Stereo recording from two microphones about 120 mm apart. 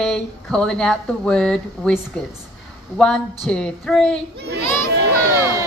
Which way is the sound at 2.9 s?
5° left (ahead or behind).